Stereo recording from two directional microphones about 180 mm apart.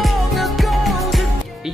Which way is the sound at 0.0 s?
Centre (ahead or behind).